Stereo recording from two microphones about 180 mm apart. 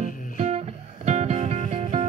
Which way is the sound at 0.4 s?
35° right (ahead or behind).